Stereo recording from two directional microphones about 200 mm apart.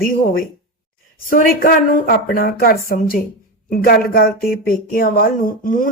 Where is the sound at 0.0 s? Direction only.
45° left (ahead or behind).